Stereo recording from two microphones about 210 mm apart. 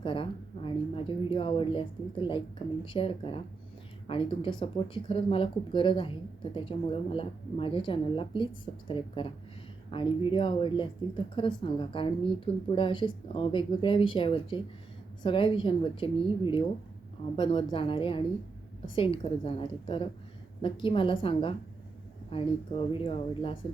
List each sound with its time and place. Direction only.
0.0 s speech: 25° left (ahead or behind)